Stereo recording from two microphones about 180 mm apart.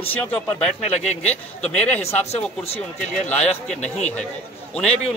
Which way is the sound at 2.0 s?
35° left (ahead or behind).